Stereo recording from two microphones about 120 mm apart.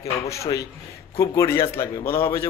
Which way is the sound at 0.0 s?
25° left (ahead or behind).